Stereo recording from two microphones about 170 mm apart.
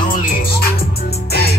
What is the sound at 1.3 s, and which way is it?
Music, 65° left (ahead or behind).